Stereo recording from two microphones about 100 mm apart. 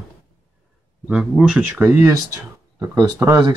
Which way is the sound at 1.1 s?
5° right (ahead or behind).